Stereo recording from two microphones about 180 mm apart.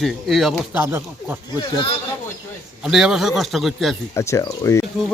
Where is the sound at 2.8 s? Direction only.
5° right (ahead or behind).